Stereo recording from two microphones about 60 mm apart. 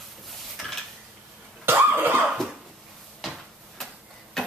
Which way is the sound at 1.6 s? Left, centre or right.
Right.